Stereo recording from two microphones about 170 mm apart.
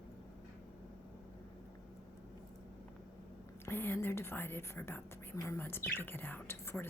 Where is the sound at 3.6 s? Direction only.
15° left (ahead or behind).